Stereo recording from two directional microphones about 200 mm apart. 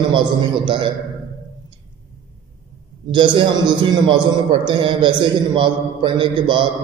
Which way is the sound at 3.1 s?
25° right (ahead or behind).